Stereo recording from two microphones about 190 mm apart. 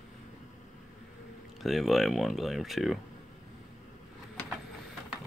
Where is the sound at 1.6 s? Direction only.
Centre (ahead or behind).